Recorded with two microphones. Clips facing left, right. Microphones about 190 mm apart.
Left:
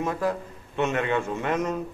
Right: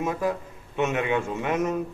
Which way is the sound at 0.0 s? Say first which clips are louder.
Even; 5° right (ahead or behind).